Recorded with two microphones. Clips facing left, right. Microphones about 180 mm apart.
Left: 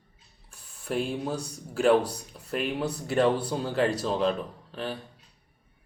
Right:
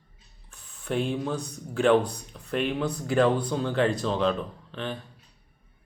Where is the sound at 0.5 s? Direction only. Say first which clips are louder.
Right 1 dB; 5° left (ahead or behind).